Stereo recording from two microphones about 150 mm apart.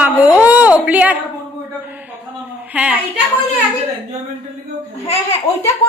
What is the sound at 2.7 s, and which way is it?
Speech, 10° right (ahead or behind).